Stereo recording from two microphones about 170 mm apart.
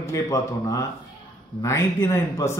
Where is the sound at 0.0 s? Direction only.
20° left (ahead or behind).